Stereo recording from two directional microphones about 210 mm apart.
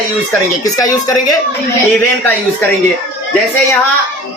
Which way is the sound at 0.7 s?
15° left (ahead or behind).